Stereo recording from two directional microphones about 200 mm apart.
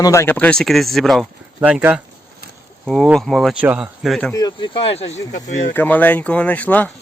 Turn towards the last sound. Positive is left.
turn(degrees=10)  # may be behind; listen again after turning